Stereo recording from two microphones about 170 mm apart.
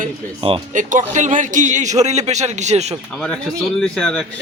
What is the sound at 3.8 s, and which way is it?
Speech, 5° left (ahead or behind).